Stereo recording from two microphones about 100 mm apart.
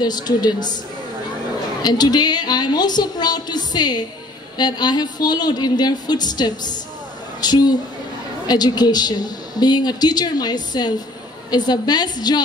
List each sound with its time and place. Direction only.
0.0 s a woman's voice: 45° left (ahead or behind)
1.8 s a woman's voice: 45° left (ahead or behind)